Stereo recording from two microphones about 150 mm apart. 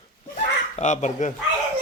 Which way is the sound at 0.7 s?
50° left (ahead or behind).